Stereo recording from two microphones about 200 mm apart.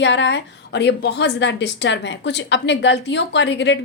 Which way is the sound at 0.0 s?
65° left (ahead or behind).